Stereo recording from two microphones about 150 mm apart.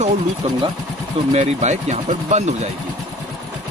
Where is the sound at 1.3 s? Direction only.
50° right (ahead or behind).